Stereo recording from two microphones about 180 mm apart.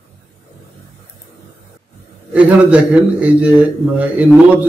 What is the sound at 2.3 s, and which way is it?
A man's voice, 5° right (ahead or behind).